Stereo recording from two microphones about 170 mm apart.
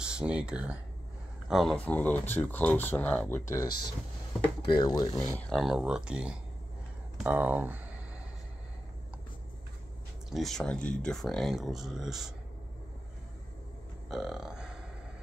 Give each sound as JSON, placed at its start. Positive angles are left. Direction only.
{"t": 0.0, "sound": "speech", "side_deg": -5}
{"t": 3.4, "sound": "speech", "side_deg": 20}
{"t": 5.4, "sound": "speech", "side_deg": 0}
{"t": 10.3, "sound": "speech", "side_deg": 0}
{"t": 14.0, "sound": "burping", "side_deg": -5}